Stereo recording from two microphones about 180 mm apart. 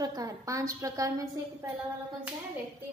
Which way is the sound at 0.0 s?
20° right (ahead or behind).